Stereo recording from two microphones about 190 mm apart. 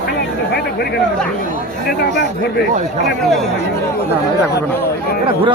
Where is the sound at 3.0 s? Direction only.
Centre (ahead or behind).